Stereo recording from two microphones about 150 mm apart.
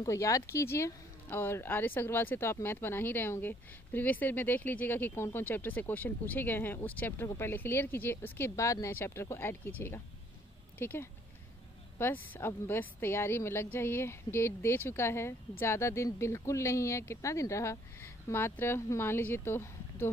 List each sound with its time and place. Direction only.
0.0 s speech: 20° left (ahead or behind)